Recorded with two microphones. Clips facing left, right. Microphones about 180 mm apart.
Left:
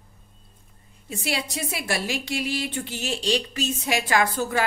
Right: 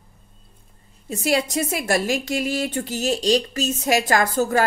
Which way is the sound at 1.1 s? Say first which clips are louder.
Right 8 dB; 45° right (ahead or behind).